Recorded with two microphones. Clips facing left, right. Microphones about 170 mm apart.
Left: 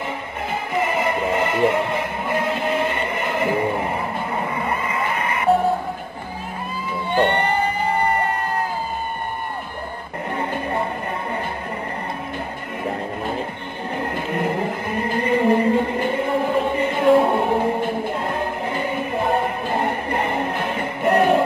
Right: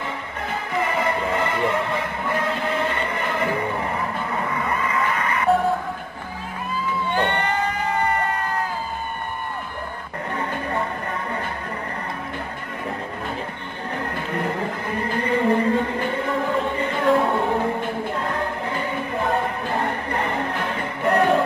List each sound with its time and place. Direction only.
0.7 s music: 15° left (ahead or behind)
13.9 s music: 15° left (ahead or behind)